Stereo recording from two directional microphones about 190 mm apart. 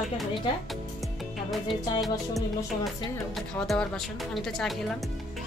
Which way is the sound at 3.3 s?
Centre (ahead or behind).